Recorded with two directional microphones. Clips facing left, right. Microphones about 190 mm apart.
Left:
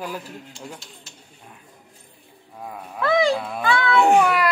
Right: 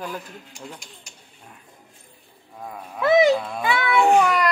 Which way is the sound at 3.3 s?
Centre (ahead or behind).